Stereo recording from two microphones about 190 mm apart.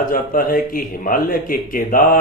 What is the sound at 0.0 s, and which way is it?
Speech, 50° left (ahead or behind).